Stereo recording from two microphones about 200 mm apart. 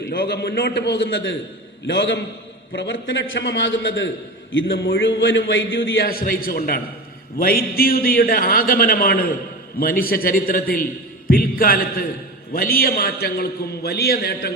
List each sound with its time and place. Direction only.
0.1 s a man's voice: 55° left (ahead or behind)